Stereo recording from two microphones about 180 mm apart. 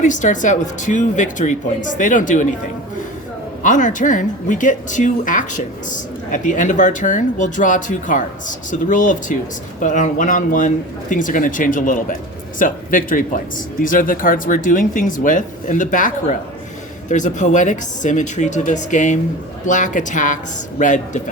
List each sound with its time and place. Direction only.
0.0 s speech: 45° left (ahead or behind)
3.6 s speech: 45° left (ahead or behind)